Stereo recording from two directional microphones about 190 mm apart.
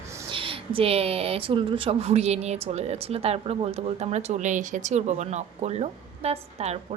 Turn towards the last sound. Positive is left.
turn(degrees=-35)  # may be behind; listen again after turning